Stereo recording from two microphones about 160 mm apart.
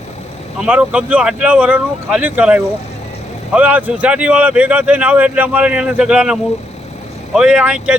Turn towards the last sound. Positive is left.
turn(degrees=-5)  # may be behind; listen again after turning